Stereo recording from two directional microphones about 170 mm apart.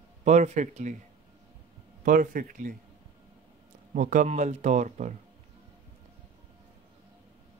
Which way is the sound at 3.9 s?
50° right (ahead or behind).